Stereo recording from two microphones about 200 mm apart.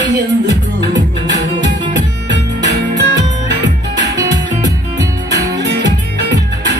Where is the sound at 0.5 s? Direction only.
60° right (ahead or behind).